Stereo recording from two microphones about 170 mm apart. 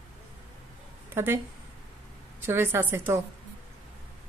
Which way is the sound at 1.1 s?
15° right (ahead or behind).